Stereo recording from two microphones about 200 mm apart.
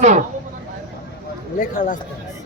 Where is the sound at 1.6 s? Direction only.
40° left (ahead or behind).